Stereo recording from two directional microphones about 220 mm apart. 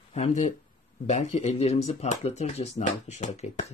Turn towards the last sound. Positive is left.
turn(degrees=30)  # may be behind; listen again after turning